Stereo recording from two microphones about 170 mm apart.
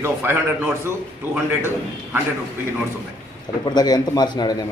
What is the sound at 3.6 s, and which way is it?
A man's voice, 25° left (ahead or behind).